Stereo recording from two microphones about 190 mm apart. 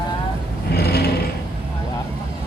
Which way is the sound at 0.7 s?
55° left (ahead or behind).